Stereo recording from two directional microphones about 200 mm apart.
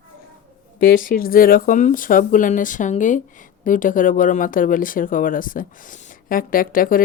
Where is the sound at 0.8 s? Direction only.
45° left (ahead or behind).